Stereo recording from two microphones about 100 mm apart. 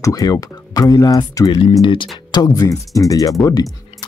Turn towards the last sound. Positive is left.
turn(degrees=35)  # may be behind; listen again after turning